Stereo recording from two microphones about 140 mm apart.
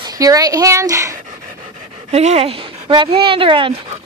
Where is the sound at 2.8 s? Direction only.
35° right (ahead or behind).